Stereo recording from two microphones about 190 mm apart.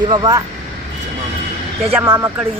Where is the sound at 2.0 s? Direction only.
10° right (ahead or behind).